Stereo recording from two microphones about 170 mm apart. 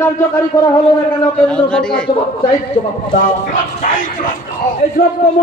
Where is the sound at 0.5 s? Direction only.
20° left (ahead or behind).